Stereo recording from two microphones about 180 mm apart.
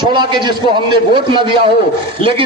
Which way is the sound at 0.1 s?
25° right (ahead or behind).